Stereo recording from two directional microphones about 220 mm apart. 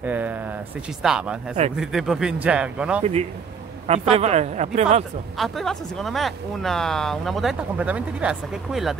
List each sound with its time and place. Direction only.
0.0 s speech: 5° right (ahead or behind)
3.0 s speech: 30° right (ahead or behind)
5.4 s speech: centre (ahead or behind)